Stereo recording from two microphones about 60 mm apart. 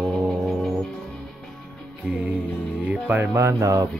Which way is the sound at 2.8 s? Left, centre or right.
Right.